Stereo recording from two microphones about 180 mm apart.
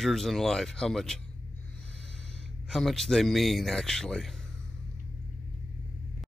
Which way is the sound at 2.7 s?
Centre (ahead or behind).